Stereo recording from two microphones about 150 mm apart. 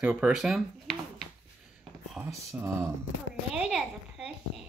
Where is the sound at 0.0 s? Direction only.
10° right (ahead or behind).